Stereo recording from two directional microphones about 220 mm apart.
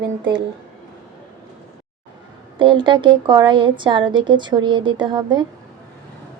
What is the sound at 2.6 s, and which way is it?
A woman's voice, 20° right (ahead or behind).